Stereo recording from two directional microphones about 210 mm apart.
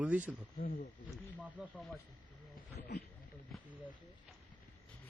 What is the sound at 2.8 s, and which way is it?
Speech, 50° left (ahead or behind).